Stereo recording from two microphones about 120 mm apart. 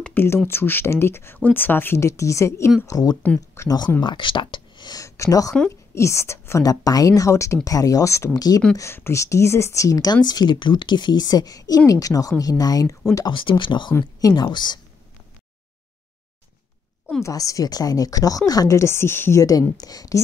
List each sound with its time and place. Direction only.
0.0 s a sound: 15° left (ahead or behind)
0.5 s a woman's voice: 20° left (ahead or behind)
3.2 s speech: 15° left (ahead or behind)
3.6 s a woman's voice: 35° left (ahead or behind)
8.7 s a woman's voice: 20° left (ahead or behind)
13.3 s a woman's voice: 45° left (ahead or behind)
17.2 s a woman's voice: 30° left (ahead or behind)
19.8 s a woman's voice: 30° left (ahead or behind)